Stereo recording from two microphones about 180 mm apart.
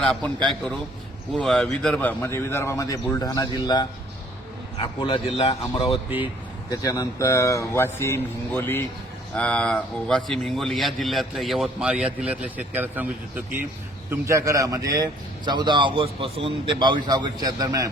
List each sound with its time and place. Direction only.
0.0 s a man's voice: 5° left (ahead or behind); by 6.0 s 30° left (ahead or behind)
6.7 s a man's voice: 20° left (ahead or behind); by 17.8 s 20° right (ahead or behind)